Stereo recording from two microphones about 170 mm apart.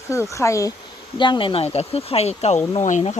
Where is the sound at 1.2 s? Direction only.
30° left (ahead or behind).